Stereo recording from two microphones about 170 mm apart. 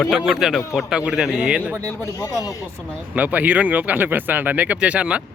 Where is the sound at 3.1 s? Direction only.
10° right (ahead or behind).